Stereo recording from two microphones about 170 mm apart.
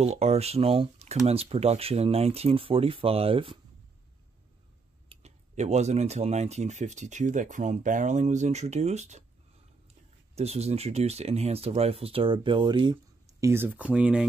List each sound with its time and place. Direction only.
0.0 s speech: 40° right (ahead or behind)
5.1 s speech: 40° right (ahead or behind)
10.3 s speech: 40° right (ahead or behind); by 14.2 s 5° right (ahead or behind)